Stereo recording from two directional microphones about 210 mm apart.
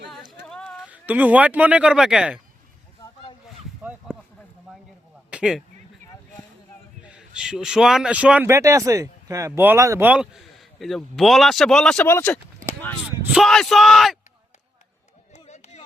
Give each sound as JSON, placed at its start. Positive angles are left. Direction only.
{"t": 0.1, "sound": "a sound", "side_deg": 0}
{"t": 0.9, "sound": "speech", "side_deg": -5}
{"t": 5.3, "sound": "speech", "side_deg": -5}
{"t": 7.0, "sound": "a man's voice", "side_deg": -5}
{"t": 13.1, "sound": "a man's voice", "side_deg": -5}
{"t": 15.3, "sound": "chop", "side_deg": 35}